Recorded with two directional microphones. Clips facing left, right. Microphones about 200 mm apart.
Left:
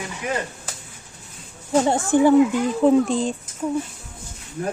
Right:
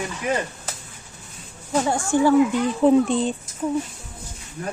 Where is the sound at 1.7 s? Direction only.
25° left (ahead or behind).